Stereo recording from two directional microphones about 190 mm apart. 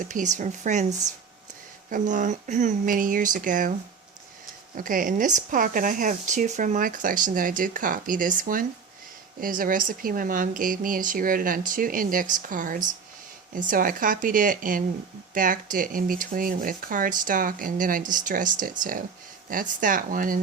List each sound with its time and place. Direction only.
0.0 s speech: 40° right (ahead or behind)